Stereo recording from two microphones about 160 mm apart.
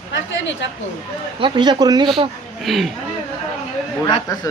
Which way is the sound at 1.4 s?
30° right (ahead or behind).